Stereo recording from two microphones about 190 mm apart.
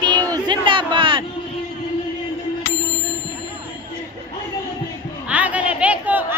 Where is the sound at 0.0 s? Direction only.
20° right (ahead or behind).